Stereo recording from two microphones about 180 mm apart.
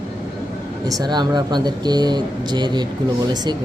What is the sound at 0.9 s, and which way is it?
Speech, 20° right (ahead or behind).